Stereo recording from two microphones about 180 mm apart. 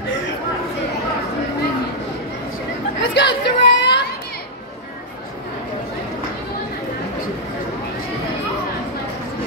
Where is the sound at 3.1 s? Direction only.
70° left (ahead or behind).